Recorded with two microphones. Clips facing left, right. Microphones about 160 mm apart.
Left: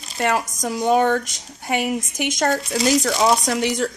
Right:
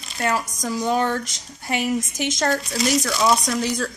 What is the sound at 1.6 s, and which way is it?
A woman's voice, 15° left (ahead or behind).